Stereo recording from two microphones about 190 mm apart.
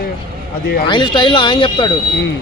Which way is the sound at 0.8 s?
25° left (ahead or behind).